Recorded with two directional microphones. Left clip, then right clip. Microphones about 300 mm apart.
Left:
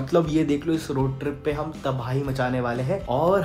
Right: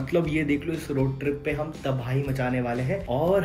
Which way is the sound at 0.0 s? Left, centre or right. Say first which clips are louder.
Left 4 dB; centre.